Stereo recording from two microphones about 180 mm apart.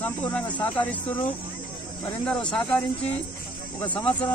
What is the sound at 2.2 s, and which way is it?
Speech, 5° left (ahead or behind).